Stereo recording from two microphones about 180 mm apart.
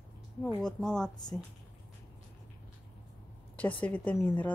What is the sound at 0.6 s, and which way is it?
Speech, 5° left (ahead or behind).